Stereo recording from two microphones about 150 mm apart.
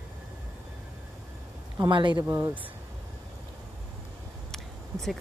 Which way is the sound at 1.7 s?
30° right (ahead or behind).